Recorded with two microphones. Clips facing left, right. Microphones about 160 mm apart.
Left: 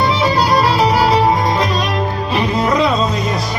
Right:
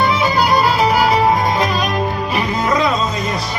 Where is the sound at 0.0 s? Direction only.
35° left (ahead or behind).